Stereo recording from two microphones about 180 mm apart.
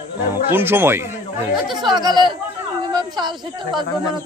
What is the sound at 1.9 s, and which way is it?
Speech, 25° right (ahead or behind).